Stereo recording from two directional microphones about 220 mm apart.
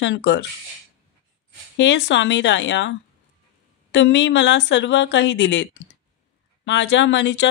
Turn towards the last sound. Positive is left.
turn(degrees=55)  # may be behind; listen again after turning